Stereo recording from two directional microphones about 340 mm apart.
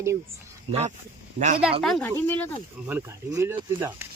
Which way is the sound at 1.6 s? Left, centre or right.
Centre.